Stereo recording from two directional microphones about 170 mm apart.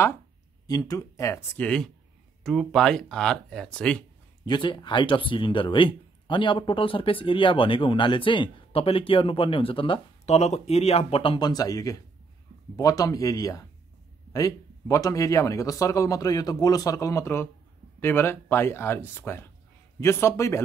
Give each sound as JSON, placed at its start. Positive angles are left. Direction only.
{"t": 0.7, "sound": "speech", "side_deg": 20}
{"t": 4.5, "sound": "speech", "side_deg": 25}